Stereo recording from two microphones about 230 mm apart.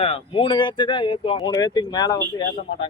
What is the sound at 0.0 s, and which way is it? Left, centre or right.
Speech, left.